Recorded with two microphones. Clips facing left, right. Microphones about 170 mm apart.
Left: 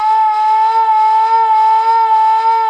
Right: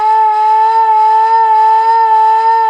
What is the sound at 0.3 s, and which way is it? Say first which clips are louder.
Shofar: right 2 dB; 50° right (ahead or behind).